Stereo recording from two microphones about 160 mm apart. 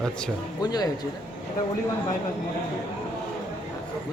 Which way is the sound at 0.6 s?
25° left (ahead or behind).